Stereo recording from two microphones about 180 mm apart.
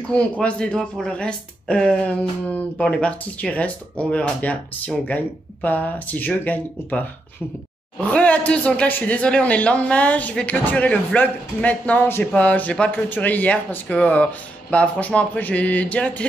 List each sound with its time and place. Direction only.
0.4 s speech: 5° left (ahead or behind)